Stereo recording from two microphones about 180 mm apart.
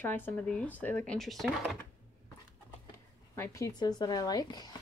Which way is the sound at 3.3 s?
15° left (ahead or behind).